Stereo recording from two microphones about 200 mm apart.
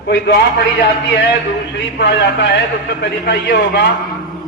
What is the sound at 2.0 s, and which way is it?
A man's voice, 60° left (ahead or behind).